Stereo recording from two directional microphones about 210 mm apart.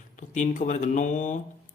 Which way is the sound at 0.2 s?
35° left (ahead or behind).